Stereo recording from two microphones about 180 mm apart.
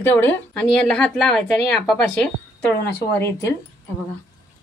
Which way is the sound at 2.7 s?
65° left (ahead or behind).